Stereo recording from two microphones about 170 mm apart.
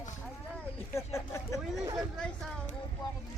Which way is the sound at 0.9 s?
15° left (ahead or behind).